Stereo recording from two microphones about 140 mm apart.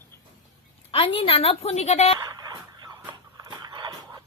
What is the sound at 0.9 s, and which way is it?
A woman's voice, 40° left (ahead or behind).